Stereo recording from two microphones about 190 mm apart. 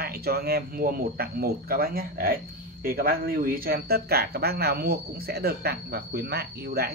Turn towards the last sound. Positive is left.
turn(degrees=-55)  # may be behind; listen again after turning